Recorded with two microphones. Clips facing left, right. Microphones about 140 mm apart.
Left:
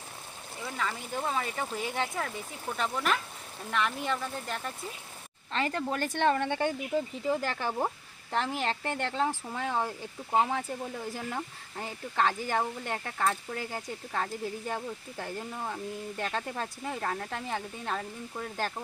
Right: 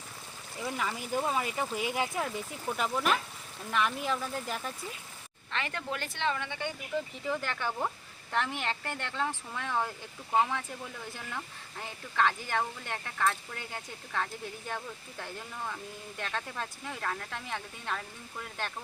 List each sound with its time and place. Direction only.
0.8 s speech: 10° right (ahead or behind)
5.5 s speech: 35° left (ahead or behind)
6.1 s speech: 50° left (ahead or behind)
7.3 s speech: 35° left (ahead or behind)